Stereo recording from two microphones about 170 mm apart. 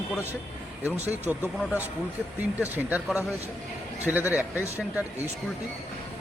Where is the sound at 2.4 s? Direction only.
10° right (ahead or behind).